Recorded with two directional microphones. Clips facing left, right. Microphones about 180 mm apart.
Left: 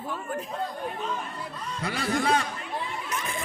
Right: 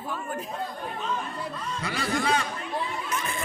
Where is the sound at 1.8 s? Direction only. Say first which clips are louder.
Left 2 dB; 50° left (ahead or behind).